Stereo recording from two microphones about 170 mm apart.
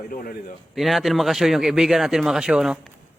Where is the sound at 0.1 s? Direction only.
60° left (ahead or behind).